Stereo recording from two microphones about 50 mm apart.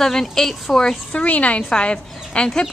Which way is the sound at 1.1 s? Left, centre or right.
Left.